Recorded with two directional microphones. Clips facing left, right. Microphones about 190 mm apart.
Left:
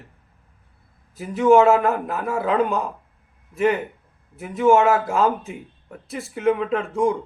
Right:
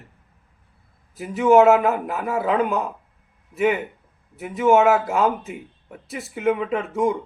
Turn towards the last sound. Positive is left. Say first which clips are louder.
# left 1 dB
turn(degrees=0)  # may be behind; listen again after turning